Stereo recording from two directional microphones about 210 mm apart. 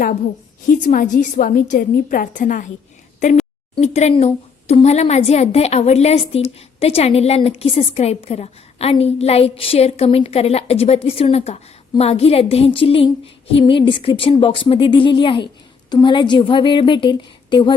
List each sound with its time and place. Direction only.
0.6 s a woman's voice: 40° left (ahead or behind)
3.8 s a woman's voice: 30° left (ahead or behind)